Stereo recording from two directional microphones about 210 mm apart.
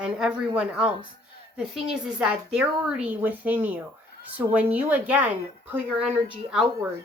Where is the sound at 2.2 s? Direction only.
5° right (ahead or behind).